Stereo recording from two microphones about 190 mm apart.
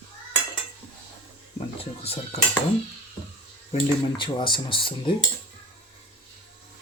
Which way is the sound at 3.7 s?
25° left (ahead or behind).